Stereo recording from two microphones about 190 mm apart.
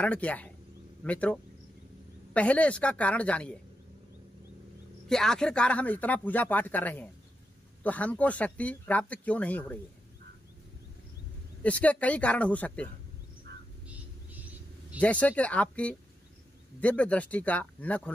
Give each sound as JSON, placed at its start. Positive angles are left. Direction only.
{"t": 0.0, "sound": "speech", "side_deg": 5}
{"t": 5.0, "sound": "speech", "side_deg": 5}
{"t": 11.6, "sound": "speech", "side_deg": 5}
{"t": 13.5, "sound": "bird", "side_deg": -60}
{"t": 15.0, "sound": "speech", "side_deg": 5}